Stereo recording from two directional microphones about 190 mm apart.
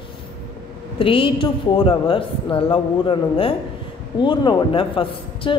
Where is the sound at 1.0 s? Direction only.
30° left (ahead or behind).